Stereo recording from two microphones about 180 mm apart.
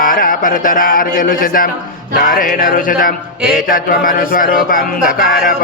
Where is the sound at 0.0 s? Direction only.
50° left (ahead or behind).